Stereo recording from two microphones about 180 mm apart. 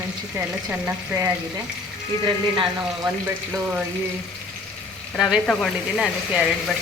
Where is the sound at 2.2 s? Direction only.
25° right (ahead or behind).